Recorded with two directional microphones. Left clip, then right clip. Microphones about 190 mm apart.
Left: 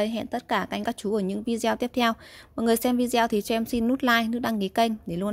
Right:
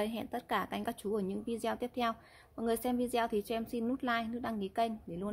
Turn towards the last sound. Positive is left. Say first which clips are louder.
# left 10 dB
turn(degrees=45)  # may be behind; listen again after turning